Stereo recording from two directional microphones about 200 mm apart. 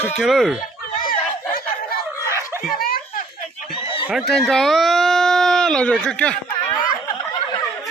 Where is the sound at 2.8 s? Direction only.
45° left (ahead or behind).